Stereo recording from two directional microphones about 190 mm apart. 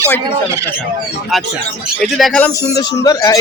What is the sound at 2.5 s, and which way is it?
Speech, 15° left (ahead or behind).